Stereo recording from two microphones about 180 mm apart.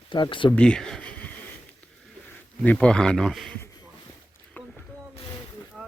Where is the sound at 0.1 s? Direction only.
25° left (ahead or behind).